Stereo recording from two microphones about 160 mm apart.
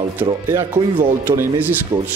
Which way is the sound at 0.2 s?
15° right (ahead or behind).